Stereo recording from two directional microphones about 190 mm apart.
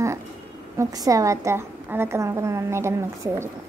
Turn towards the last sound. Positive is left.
turn(degrees=-15)  # may be behind; listen again after turning